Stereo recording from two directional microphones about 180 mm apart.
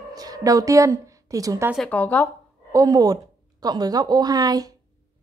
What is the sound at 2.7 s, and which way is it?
A woman's voice, 20° right (ahead or behind).